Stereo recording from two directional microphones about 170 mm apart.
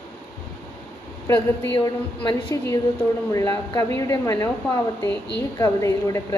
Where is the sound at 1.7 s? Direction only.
25° left (ahead or behind).